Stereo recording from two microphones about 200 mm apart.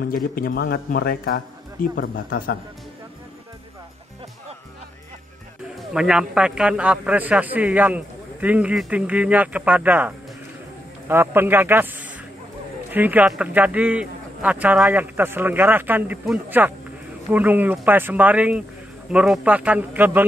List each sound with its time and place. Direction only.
0.0 s a man's voice: 45° left (ahead or behind)
5.8 s a man's voice: 5° right (ahead or behind)